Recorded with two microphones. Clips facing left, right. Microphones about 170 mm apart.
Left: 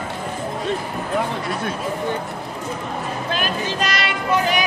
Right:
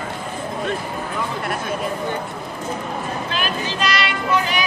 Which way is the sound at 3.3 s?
45° left (ahead or behind).